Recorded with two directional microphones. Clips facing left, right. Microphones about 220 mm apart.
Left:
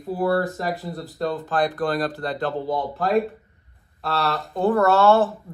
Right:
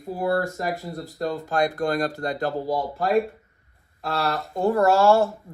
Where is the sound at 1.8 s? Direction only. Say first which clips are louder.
Even; 45° right (ahead or behind).